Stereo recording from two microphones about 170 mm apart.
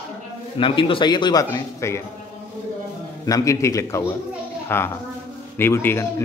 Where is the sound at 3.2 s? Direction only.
20° left (ahead or behind).